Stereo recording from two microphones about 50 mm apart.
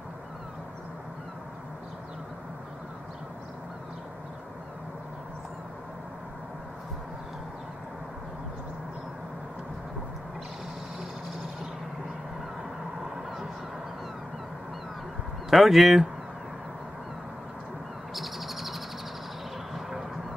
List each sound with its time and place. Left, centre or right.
13.0 s vehicle: centre
15.5 s speech: centre
18.1 s bird: centre
19.7 s vehicle: centre